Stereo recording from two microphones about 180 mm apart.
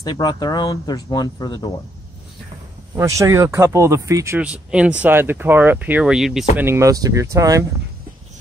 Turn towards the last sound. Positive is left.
turn(degrees=-20)  # may be behind; listen again after turning